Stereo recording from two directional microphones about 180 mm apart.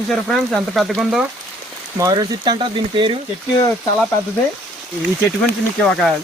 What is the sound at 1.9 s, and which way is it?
Speech, 20° right (ahead or behind).